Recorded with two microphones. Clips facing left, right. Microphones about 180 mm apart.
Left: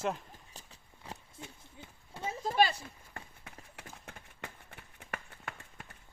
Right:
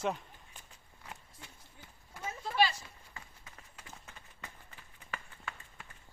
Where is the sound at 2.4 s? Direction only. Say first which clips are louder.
Left 2 dB; 40° left (ahead or behind).